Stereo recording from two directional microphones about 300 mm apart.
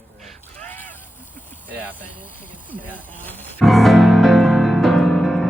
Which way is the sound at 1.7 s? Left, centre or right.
Centre.